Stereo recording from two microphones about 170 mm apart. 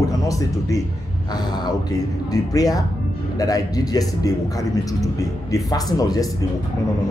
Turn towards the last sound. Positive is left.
turn(degrees=20)  # may be behind; listen again after turning